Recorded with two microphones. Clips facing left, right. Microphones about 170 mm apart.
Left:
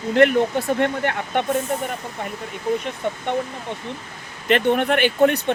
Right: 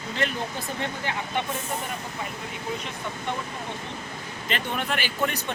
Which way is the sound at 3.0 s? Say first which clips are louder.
Left 10 dB; 60° left (ahead or behind).